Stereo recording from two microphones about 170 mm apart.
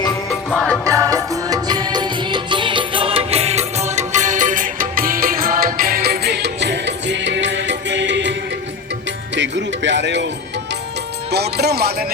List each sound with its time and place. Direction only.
0.5 s music: centre (ahead or behind)
0.9 s music: 20° right (ahead or behind); by 10.2 s 90° right
11.3 s music: 75° right (ahead or behind)